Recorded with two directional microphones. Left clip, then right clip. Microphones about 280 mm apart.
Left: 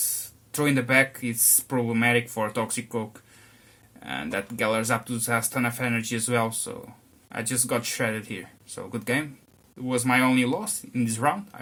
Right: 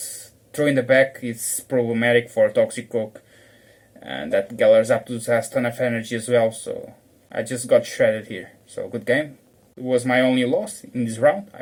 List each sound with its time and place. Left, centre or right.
0.5 s speech: centre
4.6 s speech: centre